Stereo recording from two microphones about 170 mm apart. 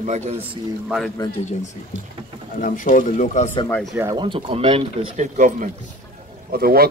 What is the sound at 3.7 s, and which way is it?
Speech, centre (ahead or behind).